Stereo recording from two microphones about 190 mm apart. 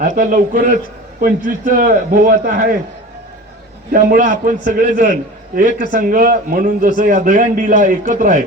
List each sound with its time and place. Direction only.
0.0 s a man's voice: 40° right (ahead or behind)
3.9 s a man's voice: 50° right (ahead or behind)